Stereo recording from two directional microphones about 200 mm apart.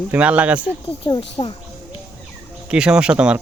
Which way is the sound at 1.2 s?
25° left (ahead or behind).